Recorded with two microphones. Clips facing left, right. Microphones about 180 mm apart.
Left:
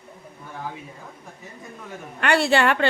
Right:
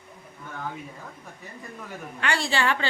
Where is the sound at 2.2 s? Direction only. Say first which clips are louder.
Left 7 dB; 60° left (ahead or behind).